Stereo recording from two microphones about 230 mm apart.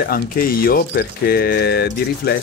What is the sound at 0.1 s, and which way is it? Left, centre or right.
Speech, left.